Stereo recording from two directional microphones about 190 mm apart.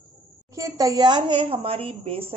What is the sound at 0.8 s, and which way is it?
A woman's voice, 20° right (ahead or behind).